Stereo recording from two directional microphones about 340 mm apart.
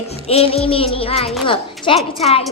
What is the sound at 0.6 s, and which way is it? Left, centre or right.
Child singing, centre.